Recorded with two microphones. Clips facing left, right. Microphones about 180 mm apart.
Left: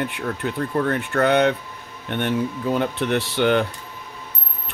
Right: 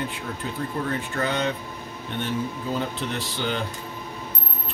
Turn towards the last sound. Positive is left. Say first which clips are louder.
# left 9 dB
turn(degrees=65)  # may be behind; listen again after turning